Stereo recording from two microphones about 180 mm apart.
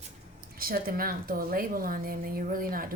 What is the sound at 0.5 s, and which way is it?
A woman's voice, 55° right (ahead or behind).